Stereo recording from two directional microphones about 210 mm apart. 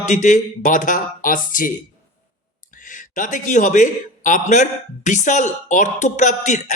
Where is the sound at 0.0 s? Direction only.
35° left (ahead or behind).